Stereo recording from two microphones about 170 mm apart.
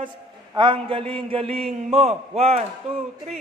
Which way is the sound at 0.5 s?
30° right (ahead or behind).